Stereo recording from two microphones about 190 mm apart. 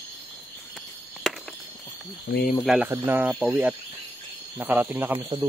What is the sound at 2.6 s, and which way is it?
Speech, centre (ahead or behind).